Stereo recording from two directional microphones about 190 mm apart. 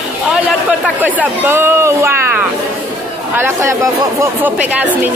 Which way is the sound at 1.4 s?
10° right (ahead or behind).